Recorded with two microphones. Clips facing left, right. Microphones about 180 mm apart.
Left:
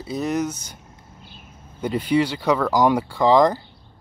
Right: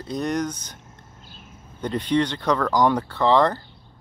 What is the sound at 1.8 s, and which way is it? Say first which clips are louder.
Speech: left 2 dB; 10° left (ahead or behind).